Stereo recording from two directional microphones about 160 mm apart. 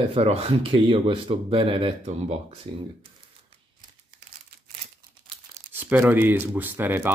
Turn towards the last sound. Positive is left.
turn(degrees=-10)  # may be behind; listen again after turning